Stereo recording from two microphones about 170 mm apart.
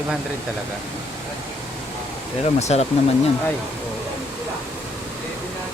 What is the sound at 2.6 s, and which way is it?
Speech, 40° left (ahead or behind).